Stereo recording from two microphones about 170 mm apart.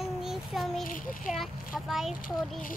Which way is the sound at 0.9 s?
55° left (ahead or behind).